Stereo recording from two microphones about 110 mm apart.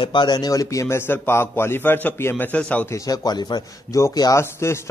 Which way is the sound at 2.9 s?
35° left (ahead or behind).